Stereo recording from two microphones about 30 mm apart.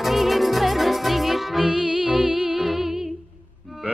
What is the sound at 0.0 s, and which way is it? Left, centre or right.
Music, centre.